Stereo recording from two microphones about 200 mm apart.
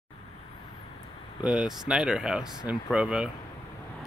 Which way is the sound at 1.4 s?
5° right (ahead or behind).